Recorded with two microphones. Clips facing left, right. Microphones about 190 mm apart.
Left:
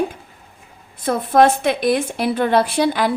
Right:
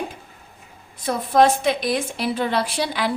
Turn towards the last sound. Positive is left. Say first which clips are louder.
# left 6 dB
turn(degrees=50)  # may be behind; listen again after turning